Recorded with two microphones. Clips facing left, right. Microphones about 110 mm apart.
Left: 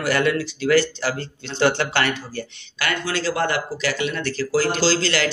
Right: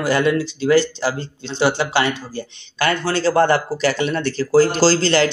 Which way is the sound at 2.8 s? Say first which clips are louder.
Right 6 dB; 30° right (ahead or behind).